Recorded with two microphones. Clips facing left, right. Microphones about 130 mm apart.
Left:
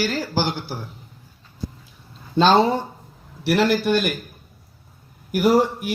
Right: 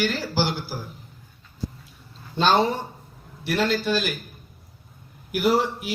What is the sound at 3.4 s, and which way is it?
Speech, 75° left (ahead or behind).